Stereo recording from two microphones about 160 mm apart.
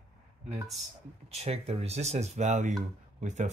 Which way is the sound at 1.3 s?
40° right (ahead or behind).